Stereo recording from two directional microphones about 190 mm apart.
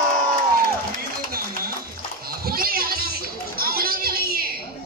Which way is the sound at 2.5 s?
50° right (ahead or behind).